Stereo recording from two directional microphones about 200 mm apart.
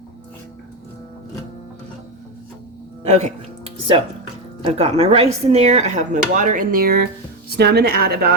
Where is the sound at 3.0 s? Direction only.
35° right (ahead or behind).